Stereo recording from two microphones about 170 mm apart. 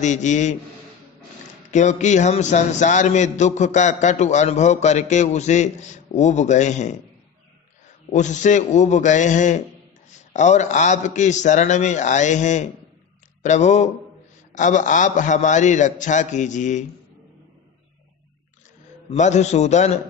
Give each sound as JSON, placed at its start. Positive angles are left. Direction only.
{"t": 0.0, "sound": "a man's voice", "side_deg": 45}
{"t": 1.7, "sound": "a man's voice", "side_deg": 45}
{"t": 8.1, "sound": "a man's voice", "side_deg": 45}
{"t": 19.0, "sound": "a man's voice", "side_deg": 45}